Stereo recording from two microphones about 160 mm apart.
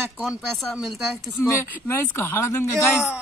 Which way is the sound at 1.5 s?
15° left (ahead or behind).